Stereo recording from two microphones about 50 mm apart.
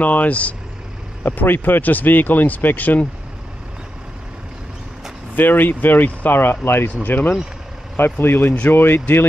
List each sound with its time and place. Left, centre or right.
0.0 s speech: left
1.3 s speech: left
5.3 s speech: left